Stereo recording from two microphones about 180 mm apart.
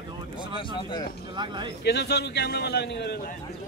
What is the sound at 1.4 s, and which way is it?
Speech, 25° right (ahead or behind).